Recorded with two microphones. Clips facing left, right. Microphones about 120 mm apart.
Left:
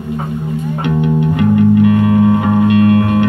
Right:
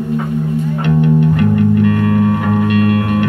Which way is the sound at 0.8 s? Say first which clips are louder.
Right 1 dB; 20° left (ahead or behind).